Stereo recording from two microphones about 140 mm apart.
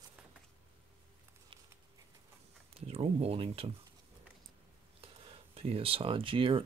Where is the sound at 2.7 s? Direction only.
45° right (ahead or behind).